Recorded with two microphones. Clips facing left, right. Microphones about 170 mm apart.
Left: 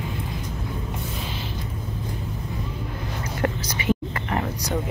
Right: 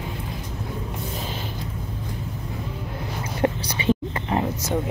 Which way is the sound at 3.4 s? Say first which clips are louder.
Right 3 dB; 25° right (ahead or behind).